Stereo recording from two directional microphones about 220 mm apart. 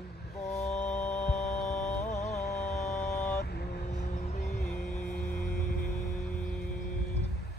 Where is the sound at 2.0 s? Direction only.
30° left (ahead or behind).